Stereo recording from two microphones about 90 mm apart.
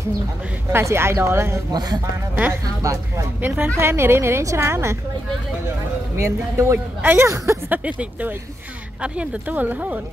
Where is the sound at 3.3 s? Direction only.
20° right (ahead or behind).